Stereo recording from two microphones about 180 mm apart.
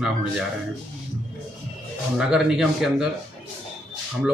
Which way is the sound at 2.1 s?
Centre (ahead or behind).